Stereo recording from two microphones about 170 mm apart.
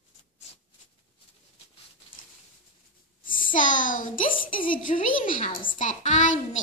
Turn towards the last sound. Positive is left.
turn(degrees=45)  # may be behind; listen again after turning